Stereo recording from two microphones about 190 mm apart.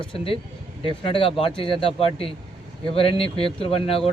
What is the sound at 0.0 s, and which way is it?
Speech, 25° left (ahead or behind).